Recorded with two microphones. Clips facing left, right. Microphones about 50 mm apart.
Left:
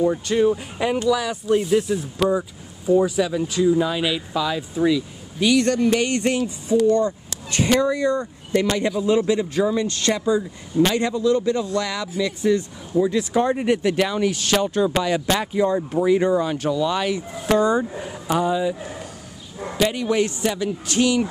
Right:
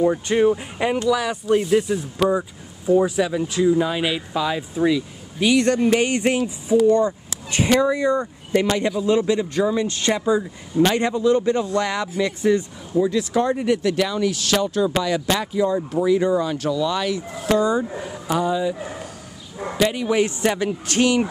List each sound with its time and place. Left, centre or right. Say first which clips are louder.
0.0 s speech: right 1 dB; right; by 5.6 s centre
5.6 s speech: right 1 dB; right
8.7 s speech: even; centre
9.8 s speech: right 1 dB; centre
10.9 s speech: right 1 dB; right
13.1 s speech: even; centre
17.5 s speech: left 1 dB; left
18.2 s speech: left 1 dB; centre
19.8 s speech: right 1 dB; centre
20.4 s speech: right 2 dB; right